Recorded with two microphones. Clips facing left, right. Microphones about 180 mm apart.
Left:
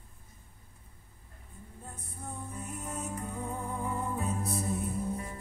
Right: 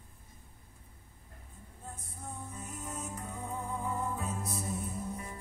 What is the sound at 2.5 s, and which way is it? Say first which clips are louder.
Music: left 3 dB; 60° left (ahead or behind).